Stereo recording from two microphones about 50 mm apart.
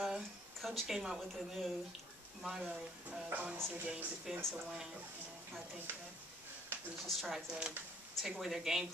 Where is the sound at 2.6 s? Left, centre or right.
Right.